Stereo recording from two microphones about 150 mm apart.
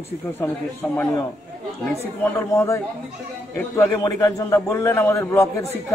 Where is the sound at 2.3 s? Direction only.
15° left (ahead or behind).